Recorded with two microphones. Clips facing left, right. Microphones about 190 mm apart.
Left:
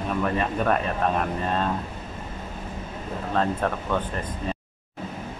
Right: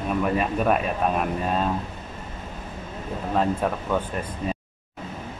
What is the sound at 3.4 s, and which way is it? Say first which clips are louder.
Speech: right 1 dB; 10° right (ahead or behind).